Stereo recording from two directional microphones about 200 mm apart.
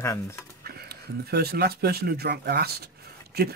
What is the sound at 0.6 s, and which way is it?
Speech, 50° right (ahead or behind).